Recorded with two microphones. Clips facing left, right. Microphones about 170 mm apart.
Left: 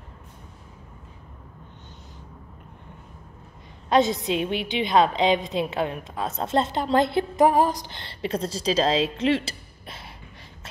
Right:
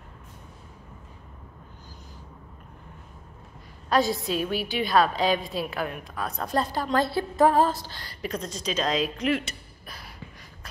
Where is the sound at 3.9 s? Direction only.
20° left (ahead or behind).